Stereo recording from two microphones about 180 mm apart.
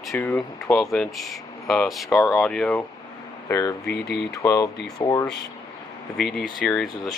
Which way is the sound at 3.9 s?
65° left (ahead or behind).